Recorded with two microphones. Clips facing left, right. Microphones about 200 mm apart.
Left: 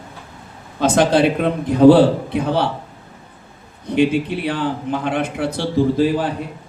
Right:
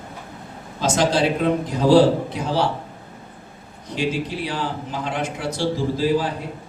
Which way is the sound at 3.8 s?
60° left (ahead or behind).